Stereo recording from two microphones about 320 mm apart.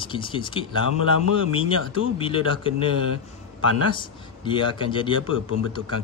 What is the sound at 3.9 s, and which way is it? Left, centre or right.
Speech, centre.